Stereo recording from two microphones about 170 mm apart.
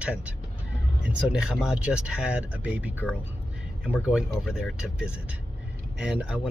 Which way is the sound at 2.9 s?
10° left (ahead or behind).